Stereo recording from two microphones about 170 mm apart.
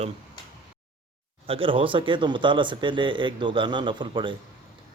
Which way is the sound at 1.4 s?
30° right (ahead or behind).